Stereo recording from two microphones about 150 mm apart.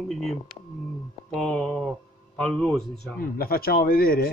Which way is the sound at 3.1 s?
75° left (ahead or behind).